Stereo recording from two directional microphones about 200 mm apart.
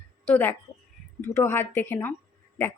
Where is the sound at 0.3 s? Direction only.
10° left (ahead or behind).